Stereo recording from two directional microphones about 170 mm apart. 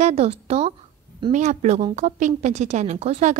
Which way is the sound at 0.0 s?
35° right (ahead or behind).